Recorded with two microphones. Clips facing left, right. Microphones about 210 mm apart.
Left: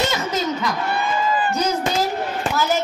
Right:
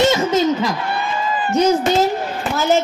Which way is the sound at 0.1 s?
25° right (ahead or behind).